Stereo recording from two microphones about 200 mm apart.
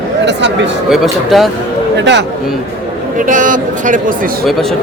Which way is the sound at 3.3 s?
40° right (ahead or behind).